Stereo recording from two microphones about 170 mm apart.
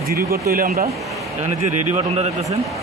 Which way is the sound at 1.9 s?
40° right (ahead or behind).